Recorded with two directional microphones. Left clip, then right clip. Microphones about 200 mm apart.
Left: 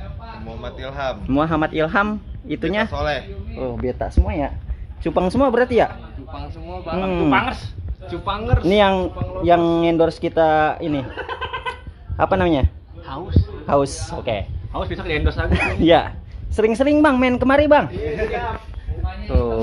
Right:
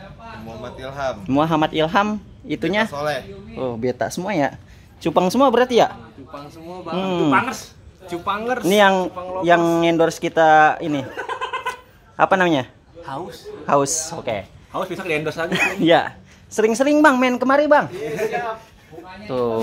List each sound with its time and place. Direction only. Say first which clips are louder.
0.5 s speech: left 1 dB; 10° right (ahead or behind)
3.5 s speech: right 2 dB; 25° right (ahead or behind)
5.0 s a man's voice: right 2 dB; 15° right (ahead or behind)
8.1 s speech: right 2 dB; 35° right (ahead or behind)
8.6 s speech: right 1 dB; 10° right (ahead or behind)
13.0 s speech: left 2 dB; 25° right (ahead or behind)
13.7 s speech: right 1 dB; 5° right (ahead or behind)
14.7 s speech: right 1 dB; 15° right (ahead or behind)
15.5 s speech: left 1 dB; 5° right (ahead or behind)
19.2 s speech: right 1 dB; 15° right (ahead or behind)